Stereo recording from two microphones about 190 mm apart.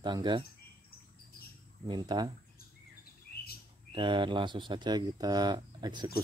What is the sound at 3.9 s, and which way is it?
Speech, 25° right (ahead or behind).